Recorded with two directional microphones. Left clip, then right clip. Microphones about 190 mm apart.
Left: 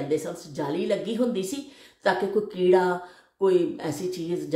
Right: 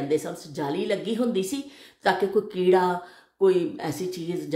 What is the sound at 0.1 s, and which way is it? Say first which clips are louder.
Speech: right 2 dB; 35° right (ahead or behind).